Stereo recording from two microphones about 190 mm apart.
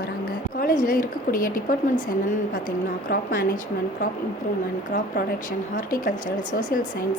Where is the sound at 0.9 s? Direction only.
45° left (ahead or behind).